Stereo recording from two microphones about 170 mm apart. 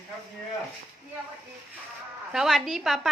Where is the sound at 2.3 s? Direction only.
Centre (ahead or behind).